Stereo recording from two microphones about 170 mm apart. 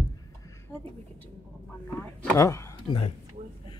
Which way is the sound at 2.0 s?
15° left (ahead or behind).